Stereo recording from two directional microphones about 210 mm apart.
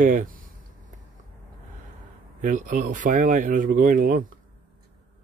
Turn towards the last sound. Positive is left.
turn(degrees=-40)  # may be behind; listen again after turning